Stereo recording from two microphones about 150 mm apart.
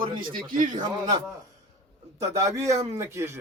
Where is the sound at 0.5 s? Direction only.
60° right (ahead or behind).